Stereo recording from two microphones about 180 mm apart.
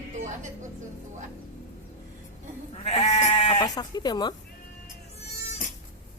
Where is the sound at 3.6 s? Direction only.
20° left (ahead or behind).